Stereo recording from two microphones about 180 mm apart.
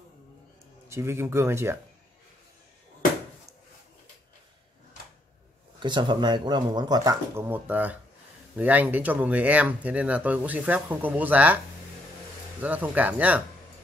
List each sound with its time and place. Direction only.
0.8 s speech: 15° right (ahead or behind)
5.8 s speech: 25° right (ahead or behind); by 11.6 s 10° right (ahead or behind)
12.6 s speech: 10° right (ahead or behind)